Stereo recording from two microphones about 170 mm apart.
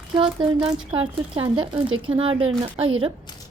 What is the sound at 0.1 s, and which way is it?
A woman's voice, 30° right (ahead or behind).